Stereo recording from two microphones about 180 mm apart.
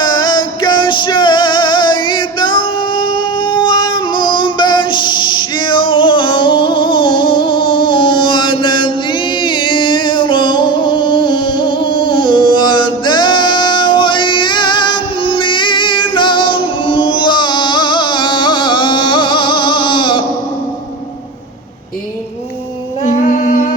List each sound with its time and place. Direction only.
0.0 s music: 25° left (ahead or behind)
23.0 s humming: 45° left (ahead or behind)